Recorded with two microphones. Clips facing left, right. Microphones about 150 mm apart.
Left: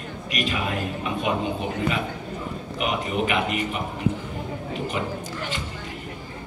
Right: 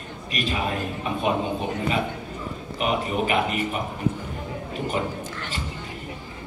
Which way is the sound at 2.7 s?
40° right (ahead or behind).